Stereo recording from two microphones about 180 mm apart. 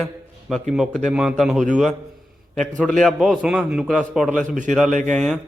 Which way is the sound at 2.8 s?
Centre (ahead or behind).